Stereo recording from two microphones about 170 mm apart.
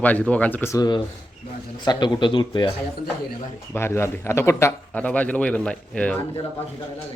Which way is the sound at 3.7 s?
15° left (ahead or behind).